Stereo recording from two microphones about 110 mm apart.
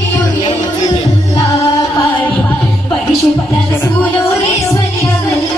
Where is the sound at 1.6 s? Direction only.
60° left (ahead or behind).